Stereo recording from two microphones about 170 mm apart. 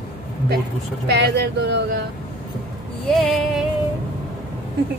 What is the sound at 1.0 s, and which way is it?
Speech, 75° right (ahead or behind).